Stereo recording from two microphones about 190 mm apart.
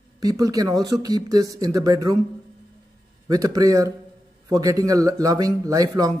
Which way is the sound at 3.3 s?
20° right (ahead or behind).